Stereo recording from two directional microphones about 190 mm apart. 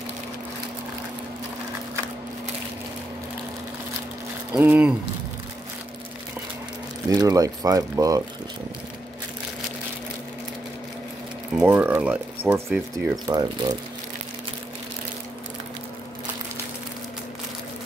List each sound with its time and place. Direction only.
4.6 s speech: 5° right (ahead or behind)
7.1 s speech: 20° right (ahead or behind)
11.5 s speech: 10° right (ahead or behind)
13.3 s speech: 20° right (ahead or behind)